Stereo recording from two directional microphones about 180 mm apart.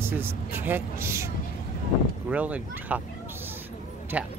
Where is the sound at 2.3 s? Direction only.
10° right (ahead or behind).